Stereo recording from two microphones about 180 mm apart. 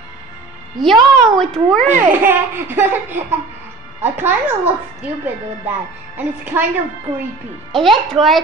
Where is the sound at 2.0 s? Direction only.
10° right (ahead or behind).